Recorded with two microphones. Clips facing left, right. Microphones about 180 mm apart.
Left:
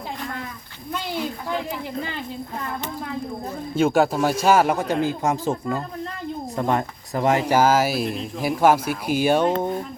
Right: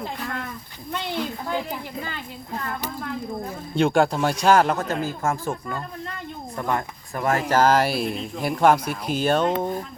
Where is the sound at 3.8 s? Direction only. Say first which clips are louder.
Left 1 dB; 5° left (ahead or behind).